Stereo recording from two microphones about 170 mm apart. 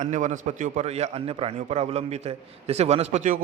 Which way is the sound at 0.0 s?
45° right (ahead or behind).